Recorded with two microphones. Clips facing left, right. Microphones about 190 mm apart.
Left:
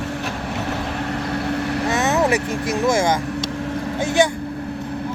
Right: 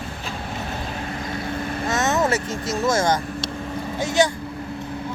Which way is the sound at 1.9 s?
15° left (ahead or behind).